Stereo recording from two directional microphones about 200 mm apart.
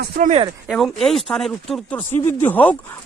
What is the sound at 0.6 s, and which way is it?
Speech, centre (ahead or behind).